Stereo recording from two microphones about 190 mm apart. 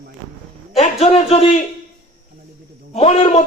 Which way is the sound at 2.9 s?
35° left (ahead or behind).